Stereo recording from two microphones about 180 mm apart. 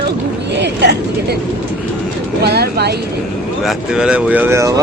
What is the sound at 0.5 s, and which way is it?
Speech, 70° right (ahead or behind).